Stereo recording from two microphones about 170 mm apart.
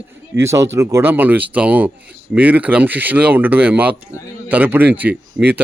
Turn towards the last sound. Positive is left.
turn(degrees=-10)  # may be behind; listen again after turning